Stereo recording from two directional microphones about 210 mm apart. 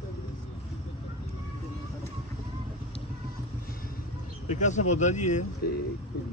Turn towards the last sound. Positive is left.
turn(degrees=35)  # may be behind; listen again after turning